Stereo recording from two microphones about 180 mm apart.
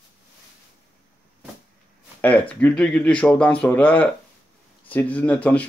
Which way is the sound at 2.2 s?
10° left (ahead or behind).